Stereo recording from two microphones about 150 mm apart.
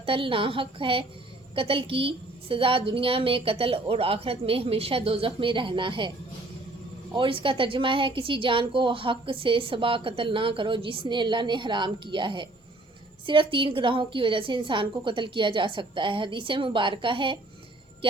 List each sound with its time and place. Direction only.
0.0 s a woman's voice: 35° right (ahead or behind)
7.1 s a woman's voice: 35° right (ahead or behind)